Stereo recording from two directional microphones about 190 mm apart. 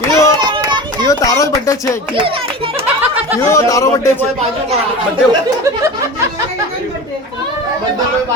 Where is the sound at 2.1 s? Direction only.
30° right (ahead or behind).